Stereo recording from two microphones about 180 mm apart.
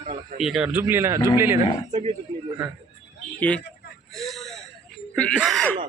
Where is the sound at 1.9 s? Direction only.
35° right (ahead or behind).